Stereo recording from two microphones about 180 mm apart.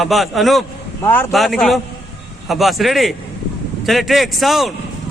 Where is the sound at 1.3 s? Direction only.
Centre (ahead or behind).